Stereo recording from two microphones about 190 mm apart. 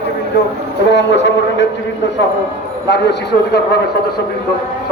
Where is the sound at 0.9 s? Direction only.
70° left (ahead or behind).